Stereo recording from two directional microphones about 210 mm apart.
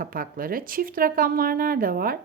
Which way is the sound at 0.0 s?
45° right (ahead or behind).